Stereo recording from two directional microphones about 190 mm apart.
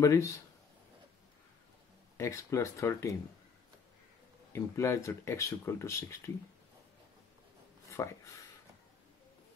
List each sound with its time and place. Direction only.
0.0 s speech: 15° left (ahead or behind)
2.1 s speech: 15° left (ahead or behind)
4.5 s speech: 15° left (ahead or behind)
7.9 s speech: 15° left (ahead or behind)